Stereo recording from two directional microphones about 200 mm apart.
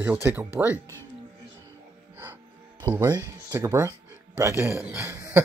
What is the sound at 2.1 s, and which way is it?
Music, 10° right (ahead or behind).